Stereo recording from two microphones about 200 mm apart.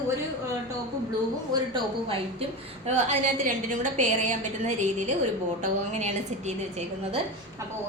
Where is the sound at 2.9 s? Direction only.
35° right (ahead or behind).